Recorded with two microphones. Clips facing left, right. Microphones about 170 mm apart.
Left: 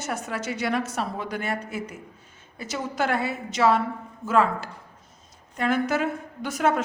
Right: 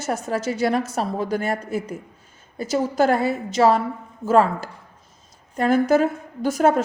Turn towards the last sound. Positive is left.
turn(degrees=-40)  # may be behind; listen again after turning